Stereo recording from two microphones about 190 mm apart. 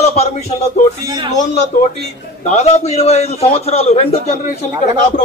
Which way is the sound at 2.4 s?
35° left (ahead or behind).